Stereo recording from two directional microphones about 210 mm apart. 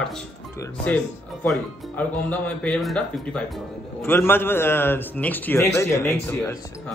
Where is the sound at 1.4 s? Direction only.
5° left (ahead or behind).